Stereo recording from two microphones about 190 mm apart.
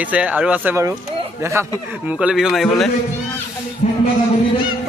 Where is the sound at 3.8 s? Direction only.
40° left (ahead or behind).